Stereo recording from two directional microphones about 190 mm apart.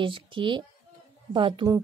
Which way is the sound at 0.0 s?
25° right (ahead or behind).